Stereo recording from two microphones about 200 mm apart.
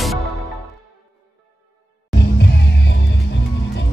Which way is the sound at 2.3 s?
60° left (ahead or behind).